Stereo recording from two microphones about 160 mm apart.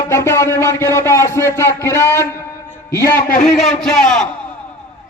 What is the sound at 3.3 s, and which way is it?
Speech, 50° left (ahead or behind).